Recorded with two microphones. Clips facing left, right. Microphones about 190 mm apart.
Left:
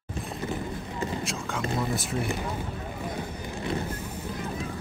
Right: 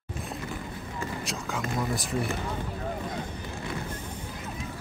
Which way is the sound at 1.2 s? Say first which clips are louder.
Left 1 dB; centre (ahead or behind).